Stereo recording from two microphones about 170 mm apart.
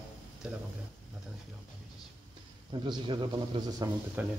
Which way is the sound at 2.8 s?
25° right (ahead or behind).